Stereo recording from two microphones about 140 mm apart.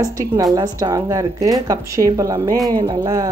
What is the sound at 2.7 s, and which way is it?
Speech, 40° right (ahead or behind).